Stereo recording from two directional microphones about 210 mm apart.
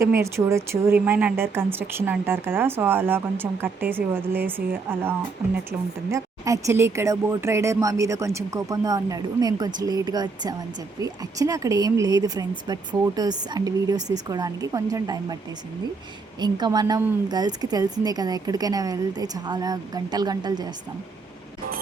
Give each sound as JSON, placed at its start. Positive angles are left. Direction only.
{"t": 0.2, "sound": "speech", "side_deg": -15}
{"t": 16.4, "sound": "speech", "side_deg": -20}